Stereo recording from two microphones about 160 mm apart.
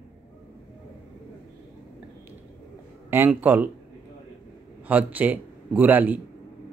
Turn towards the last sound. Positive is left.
turn(degrees=-10)  # may be behind; listen again after turning